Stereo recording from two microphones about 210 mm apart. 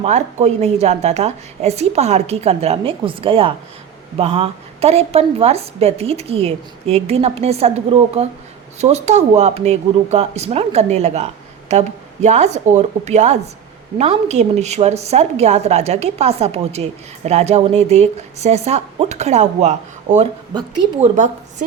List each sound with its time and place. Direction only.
0.0 s a woman's voice: 30° right (ahead or behind)
20.5 s a woman's voice: 20° right (ahead or behind)